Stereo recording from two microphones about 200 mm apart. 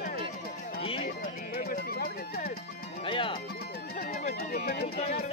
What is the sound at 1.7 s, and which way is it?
Music, 50° left (ahead or behind).